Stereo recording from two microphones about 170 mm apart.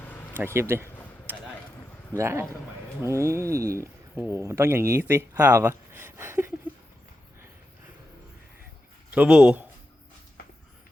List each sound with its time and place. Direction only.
0.3 s speech: 15° right (ahead or behind)
1.3 s a sound: 10° right (ahead or behind)
2.1 s speech: 15° right (ahead or behind)
9.1 s speech: 5° right (ahead or behind)